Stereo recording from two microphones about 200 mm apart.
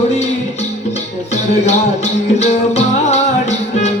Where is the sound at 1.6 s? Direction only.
35° left (ahead or behind).